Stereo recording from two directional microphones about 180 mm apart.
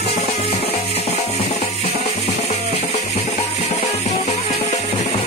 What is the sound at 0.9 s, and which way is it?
Music, 35° left (ahead or behind).